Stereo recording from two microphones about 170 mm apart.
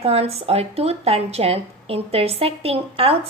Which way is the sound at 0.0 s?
35° right (ahead or behind).